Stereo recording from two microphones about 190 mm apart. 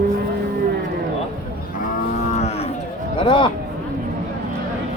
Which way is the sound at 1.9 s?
35° left (ahead or behind).